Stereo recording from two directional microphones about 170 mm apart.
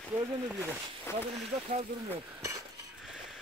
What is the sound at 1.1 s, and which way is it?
Speech, 15° left (ahead or behind).